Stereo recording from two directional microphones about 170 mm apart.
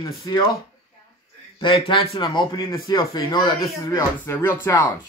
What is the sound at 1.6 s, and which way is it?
A man's voice, 30° left (ahead or behind).